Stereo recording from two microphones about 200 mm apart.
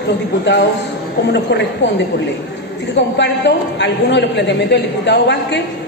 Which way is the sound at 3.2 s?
60° left (ahead or behind).